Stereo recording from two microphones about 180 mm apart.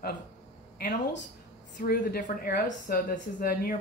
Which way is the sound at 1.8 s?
55° left (ahead or behind).